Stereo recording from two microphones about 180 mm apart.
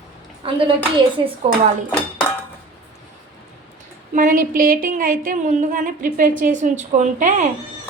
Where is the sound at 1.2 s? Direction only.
25° right (ahead or behind).